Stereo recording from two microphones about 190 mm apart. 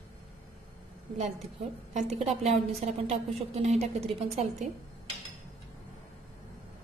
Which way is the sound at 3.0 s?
35° right (ahead or behind).